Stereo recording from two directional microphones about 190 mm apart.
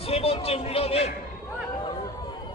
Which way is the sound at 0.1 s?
30° left (ahead or behind).